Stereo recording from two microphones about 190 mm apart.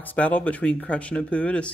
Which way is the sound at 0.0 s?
10° left (ahead or behind).